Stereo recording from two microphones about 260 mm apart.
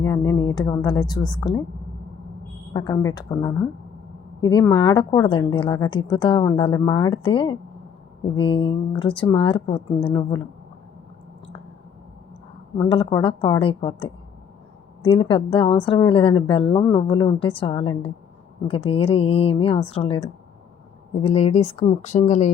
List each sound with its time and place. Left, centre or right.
0.0 s a woman's voice: centre
2.7 s a woman's voice: centre
12.7 s a woman's voice: centre